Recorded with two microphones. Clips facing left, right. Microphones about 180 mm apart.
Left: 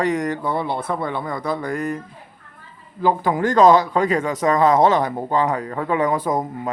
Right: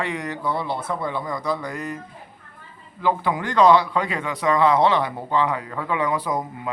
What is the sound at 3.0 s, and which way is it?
A man's voice, 40° left (ahead or behind).